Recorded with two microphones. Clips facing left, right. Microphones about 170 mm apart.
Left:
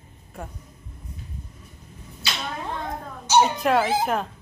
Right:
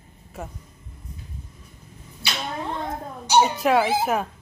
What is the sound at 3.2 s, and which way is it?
Speech, 10° right (ahead or behind).